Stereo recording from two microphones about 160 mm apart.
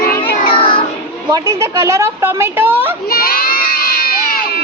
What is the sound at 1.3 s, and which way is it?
A woman's voice, 20° right (ahead or behind).